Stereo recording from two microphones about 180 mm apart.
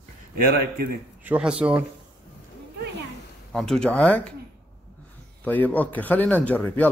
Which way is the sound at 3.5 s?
Centre (ahead or behind).